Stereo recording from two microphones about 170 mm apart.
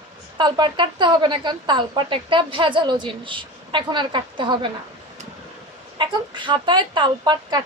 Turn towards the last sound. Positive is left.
turn(degrees=-25)  # may be behind; listen again after turning